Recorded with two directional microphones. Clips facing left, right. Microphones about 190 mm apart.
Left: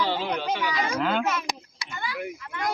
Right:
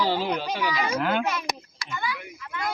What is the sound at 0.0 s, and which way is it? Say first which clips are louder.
Speech: right 2 dB; 40° right (ahead or behind).